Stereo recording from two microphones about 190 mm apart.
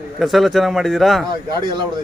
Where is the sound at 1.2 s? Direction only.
25° right (ahead or behind).